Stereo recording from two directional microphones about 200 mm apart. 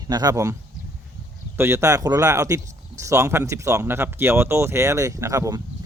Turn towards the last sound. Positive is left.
turn(degrees=-15)  # may be behind; listen again after turning